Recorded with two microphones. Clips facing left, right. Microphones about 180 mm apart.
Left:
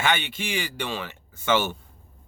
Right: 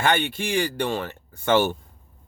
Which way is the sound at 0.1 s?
55° right (ahead or behind).